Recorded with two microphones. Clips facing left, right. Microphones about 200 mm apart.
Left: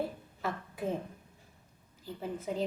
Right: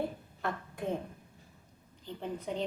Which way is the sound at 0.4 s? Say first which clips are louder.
Even; 5° left (ahead or behind).